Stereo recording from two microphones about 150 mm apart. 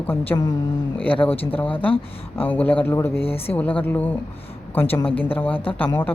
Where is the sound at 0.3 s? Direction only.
15° left (ahead or behind).